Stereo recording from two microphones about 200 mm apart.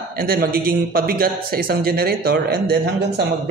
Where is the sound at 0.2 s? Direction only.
45° right (ahead or behind).